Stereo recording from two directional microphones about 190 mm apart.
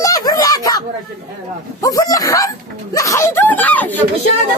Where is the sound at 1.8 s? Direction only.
20° left (ahead or behind).